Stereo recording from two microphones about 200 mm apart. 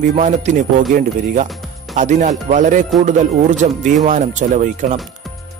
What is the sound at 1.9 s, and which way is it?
Speech, 40° right (ahead or behind).